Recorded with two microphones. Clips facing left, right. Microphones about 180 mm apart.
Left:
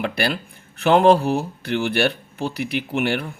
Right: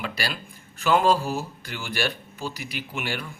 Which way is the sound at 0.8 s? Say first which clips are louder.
Left 6 dB; 60° left (ahead or behind).